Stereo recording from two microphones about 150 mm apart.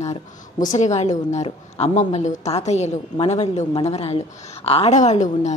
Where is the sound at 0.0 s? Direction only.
50° left (ahead or behind).